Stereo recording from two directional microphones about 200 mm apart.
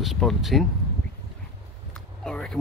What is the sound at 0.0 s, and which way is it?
Speech, centre (ahead or behind).